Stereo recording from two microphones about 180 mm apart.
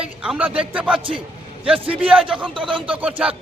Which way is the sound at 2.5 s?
30° right (ahead or behind).